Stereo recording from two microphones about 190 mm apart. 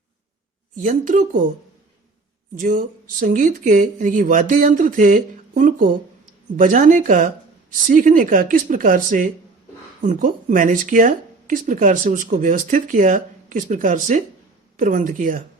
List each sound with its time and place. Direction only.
0.8 s speech: 45° right (ahead or behind)
2.6 s speech: 45° right (ahead or behind)